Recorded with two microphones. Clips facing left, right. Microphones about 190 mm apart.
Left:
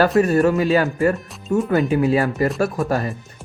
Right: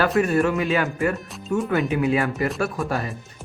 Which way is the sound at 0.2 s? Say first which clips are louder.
Left 4 dB; 35° left (ahead or behind).